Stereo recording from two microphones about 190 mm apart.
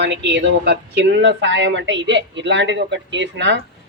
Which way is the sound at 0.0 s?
65° right (ahead or behind).